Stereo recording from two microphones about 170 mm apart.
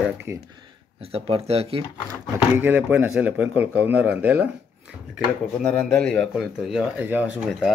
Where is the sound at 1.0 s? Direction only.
35° right (ahead or behind).